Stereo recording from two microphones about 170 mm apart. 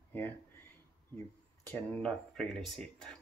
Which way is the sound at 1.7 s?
10° left (ahead or behind).